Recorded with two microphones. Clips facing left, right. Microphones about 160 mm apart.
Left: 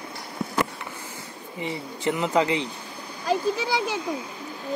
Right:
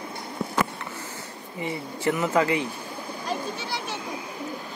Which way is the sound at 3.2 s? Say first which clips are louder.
Left 8 dB; 90° left.